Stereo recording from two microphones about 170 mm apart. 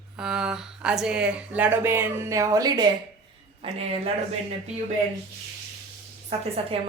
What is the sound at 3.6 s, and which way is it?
Speech, 35° right (ahead or behind).